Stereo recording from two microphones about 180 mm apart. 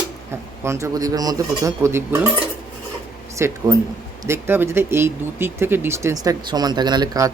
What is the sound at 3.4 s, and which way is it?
Speech, 15° right (ahead or behind).